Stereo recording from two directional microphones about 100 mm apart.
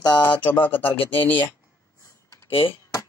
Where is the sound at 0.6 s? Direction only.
20° left (ahead or behind).